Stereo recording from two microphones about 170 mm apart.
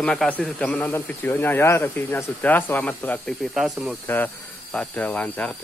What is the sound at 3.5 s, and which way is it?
Speech, 5° right (ahead or behind).